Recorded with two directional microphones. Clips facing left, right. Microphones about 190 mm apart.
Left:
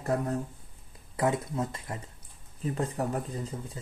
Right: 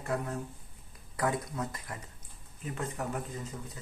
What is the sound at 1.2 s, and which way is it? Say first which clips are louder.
Speech: left 4 dB; 25° left (ahead or behind).